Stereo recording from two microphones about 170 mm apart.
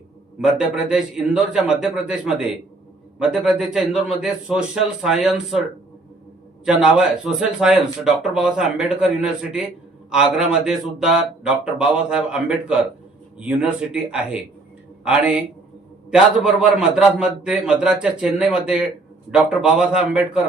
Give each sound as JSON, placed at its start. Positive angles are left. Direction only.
{"t": 0.3, "sound": "a man's voice", "side_deg": -5}
{"t": 6.7, "sound": "a man's voice", "side_deg": -5}